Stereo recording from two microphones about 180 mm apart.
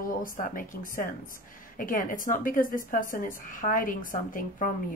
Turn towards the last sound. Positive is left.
turn(degrees=50)  # may be behind; listen again after turning